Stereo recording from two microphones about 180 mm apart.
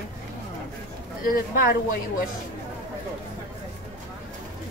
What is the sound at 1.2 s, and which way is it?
Speech, 55° left (ahead or behind).